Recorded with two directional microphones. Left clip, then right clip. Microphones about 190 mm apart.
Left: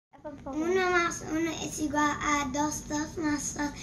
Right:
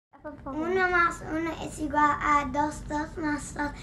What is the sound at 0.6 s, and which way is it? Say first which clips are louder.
A child's voice: right 2 dB; centre (ahead or behind).